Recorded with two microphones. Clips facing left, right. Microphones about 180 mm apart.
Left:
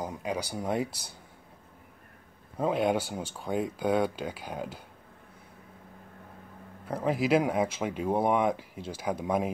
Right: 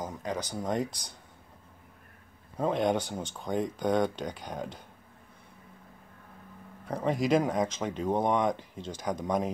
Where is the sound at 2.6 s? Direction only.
5° left (ahead or behind).